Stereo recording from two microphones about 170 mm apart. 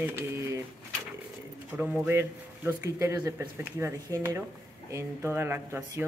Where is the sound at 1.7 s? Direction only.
10° right (ahead or behind).